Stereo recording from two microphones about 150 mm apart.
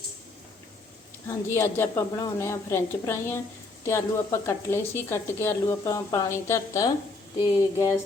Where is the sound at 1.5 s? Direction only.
15° left (ahead or behind).